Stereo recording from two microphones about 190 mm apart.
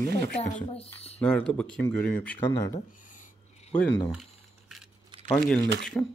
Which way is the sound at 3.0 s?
40° left (ahead or behind).